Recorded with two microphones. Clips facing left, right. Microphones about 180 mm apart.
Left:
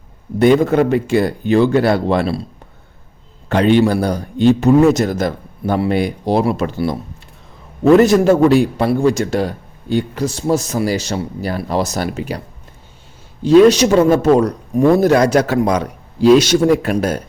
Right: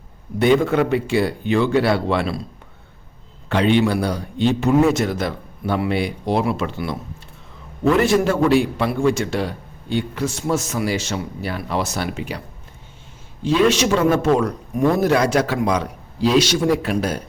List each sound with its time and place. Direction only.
0.3 s a man's voice: 40° left (ahead or behind)
3.5 s a man's voice: 45° left (ahead or behind)
7.9 s a man's voice: 40° left (ahead or behind)
13.4 s a man's voice: 40° left (ahead or behind)